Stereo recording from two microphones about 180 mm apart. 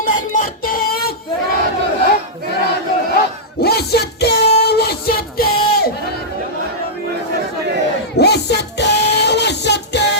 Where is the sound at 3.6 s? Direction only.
60° left (ahead or behind).